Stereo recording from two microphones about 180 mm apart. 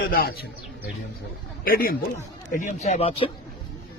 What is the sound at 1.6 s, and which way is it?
A man's voice, 55° left (ahead or behind).